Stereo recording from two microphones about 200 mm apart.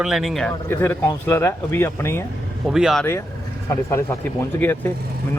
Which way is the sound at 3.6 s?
15° left (ahead or behind).